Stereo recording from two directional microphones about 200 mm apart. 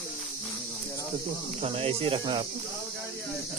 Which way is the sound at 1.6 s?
30° right (ahead or behind).